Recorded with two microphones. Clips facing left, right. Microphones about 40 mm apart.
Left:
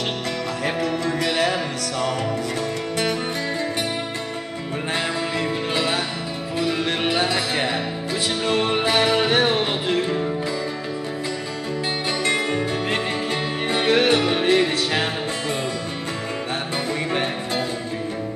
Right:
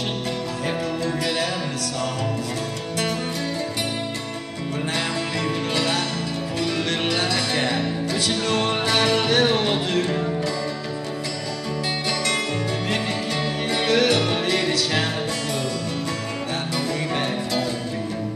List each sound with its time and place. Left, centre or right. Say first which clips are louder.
1.0 s music: left 3 dB; left
4.9 s music: left 3 dB; centre
13.7 s music: left 2 dB; left
17.1 s music: even; left